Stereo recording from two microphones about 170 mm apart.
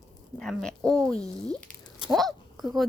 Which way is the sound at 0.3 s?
5° left (ahead or behind).